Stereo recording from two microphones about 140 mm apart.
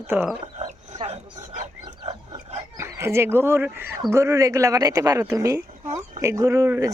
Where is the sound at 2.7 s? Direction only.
20° right (ahead or behind).